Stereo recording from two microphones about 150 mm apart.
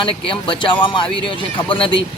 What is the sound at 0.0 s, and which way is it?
Speech, 35° left (ahead or behind).